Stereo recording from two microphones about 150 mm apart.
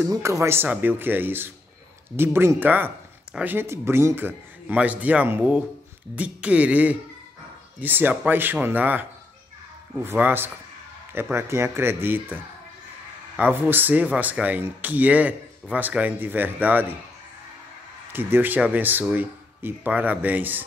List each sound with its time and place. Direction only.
0.0 s speech: 20° right (ahead or behind)
10.0 s speech: 15° right (ahead or behind)
18.1 s speech: 15° right (ahead or behind)